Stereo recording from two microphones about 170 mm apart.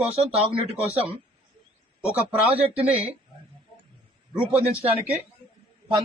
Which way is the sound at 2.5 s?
35° right (ahead or behind).